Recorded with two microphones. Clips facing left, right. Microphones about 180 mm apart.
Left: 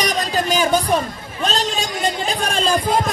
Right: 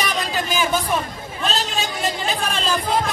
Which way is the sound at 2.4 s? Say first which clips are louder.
Left 6 dB; 40° left (ahead or behind).